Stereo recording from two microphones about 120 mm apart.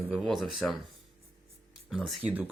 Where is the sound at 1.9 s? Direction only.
5° right (ahead or behind).